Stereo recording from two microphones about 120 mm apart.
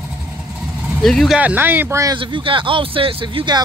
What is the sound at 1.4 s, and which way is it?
Speech, 15° right (ahead or behind).